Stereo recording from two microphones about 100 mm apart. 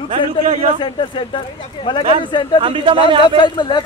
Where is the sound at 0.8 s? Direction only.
55° left (ahead or behind).